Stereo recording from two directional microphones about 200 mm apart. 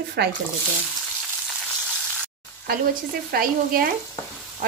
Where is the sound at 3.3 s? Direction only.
45° right (ahead or behind).